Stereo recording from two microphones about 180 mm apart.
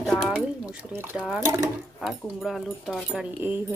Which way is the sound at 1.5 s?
15° right (ahead or behind).